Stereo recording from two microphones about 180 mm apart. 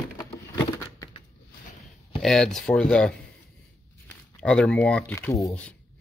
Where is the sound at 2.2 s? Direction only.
Centre (ahead or behind).